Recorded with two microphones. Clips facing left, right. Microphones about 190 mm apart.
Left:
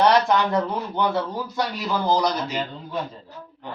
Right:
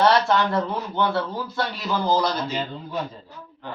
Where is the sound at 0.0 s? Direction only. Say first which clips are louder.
Left 1 dB; 15° left (ahead or behind).